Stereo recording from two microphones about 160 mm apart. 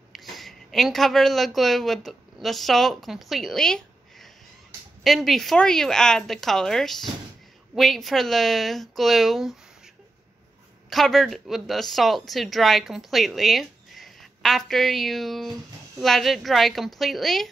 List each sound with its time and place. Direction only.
0.1 s speech: centre (ahead or behind)
10.9 s speech: centre (ahead or behind)